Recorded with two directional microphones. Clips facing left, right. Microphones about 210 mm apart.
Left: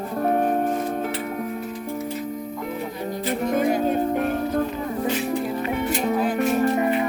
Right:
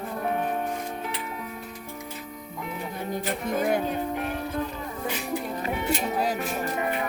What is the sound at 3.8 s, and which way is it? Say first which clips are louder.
Music: left 7 dB; 50° left (ahead or behind).